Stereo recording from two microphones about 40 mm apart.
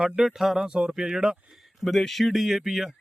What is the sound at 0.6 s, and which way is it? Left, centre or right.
Speech, right.